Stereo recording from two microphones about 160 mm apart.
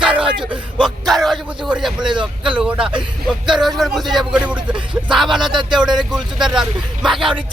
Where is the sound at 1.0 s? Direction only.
Centre (ahead or behind).